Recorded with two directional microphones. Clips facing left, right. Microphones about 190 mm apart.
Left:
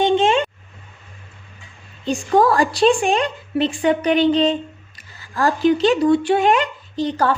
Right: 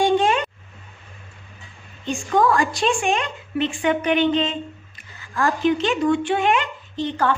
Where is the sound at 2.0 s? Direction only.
35° left (ahead or behind).